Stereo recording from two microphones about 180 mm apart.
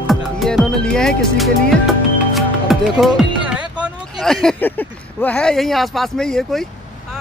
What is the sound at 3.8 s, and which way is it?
Speech, centre (ahead or behind).